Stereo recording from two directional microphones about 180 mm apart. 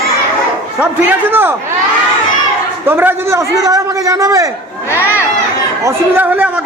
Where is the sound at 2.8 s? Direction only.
10° right (ahead or behind).